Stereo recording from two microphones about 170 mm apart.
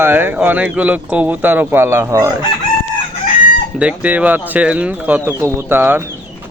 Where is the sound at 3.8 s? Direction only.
10° right (ahead or behind).